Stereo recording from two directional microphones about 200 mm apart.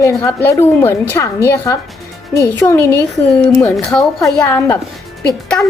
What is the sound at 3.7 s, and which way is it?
A woman's voice, centre (ahead or behind).